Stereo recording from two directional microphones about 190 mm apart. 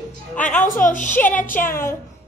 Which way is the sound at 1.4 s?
10° left (ahead or behind).